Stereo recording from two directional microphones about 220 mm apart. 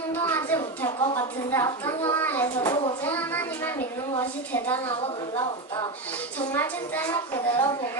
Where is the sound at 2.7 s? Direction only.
20° left (ahead or behind).